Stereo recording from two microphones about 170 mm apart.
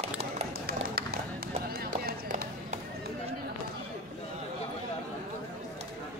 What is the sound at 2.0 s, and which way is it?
Run, 65° right (ahead or behind).